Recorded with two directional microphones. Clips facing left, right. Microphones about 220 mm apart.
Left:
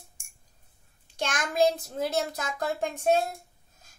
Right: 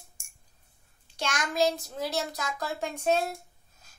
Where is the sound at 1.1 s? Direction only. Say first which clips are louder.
Left 2 dB; 50° left (ahead or behind).